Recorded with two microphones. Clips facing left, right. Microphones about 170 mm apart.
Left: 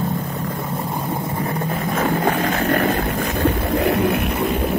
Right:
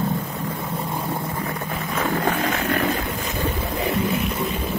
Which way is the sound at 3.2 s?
65° left (ahead or behind).